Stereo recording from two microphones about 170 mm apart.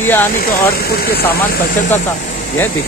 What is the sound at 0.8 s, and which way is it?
Speech, 65° left (ahead or behind).